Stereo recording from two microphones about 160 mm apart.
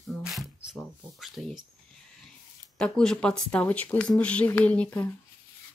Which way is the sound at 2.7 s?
5° left (ahead or behind).